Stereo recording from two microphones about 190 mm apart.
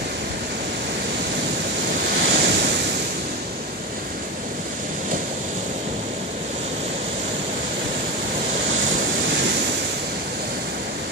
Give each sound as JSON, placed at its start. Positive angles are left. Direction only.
{"t": 2.2, "sound": "waves", "side_deg": -65}